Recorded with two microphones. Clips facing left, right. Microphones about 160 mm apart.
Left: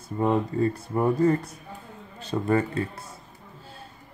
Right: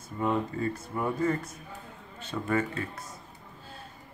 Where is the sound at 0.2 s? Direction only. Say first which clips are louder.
Left 5 dB; 35° left (ahead or behind).